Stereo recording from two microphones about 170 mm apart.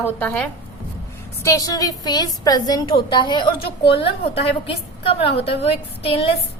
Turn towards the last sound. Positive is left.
turn(degrees=35)  # may be behind; listen again after turning